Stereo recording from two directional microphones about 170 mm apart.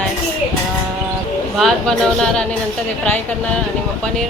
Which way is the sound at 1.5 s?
Centre (ahead or behind).